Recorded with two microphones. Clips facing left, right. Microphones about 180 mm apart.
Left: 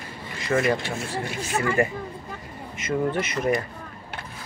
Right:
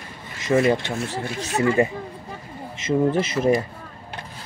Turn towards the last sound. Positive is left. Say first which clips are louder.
# right 4 dB
turn(degrees=-25)  # may be behind; listen again after turning